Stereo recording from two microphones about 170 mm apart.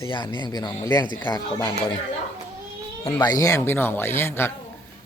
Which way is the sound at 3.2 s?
20° left (ahead or behind).